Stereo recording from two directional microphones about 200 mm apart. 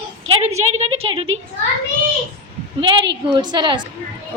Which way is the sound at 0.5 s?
90° right.